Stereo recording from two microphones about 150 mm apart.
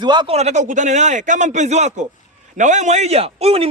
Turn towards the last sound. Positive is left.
turn(degrees=-40)  # may be behind; listen again after turning